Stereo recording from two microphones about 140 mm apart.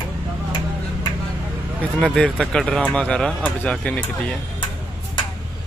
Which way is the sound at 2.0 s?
Centre (ahead or behind).